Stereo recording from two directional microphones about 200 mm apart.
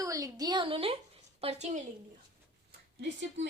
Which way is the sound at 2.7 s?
60° right (ahead or behind).